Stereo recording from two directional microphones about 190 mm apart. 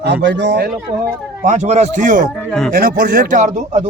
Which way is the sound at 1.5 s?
35° right (ahead or behind).